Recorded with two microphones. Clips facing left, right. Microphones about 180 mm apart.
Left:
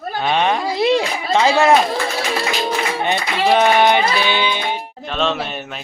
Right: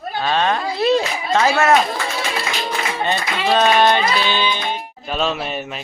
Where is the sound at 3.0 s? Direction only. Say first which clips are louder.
Left 2 dB; 15° left (ahead or behind).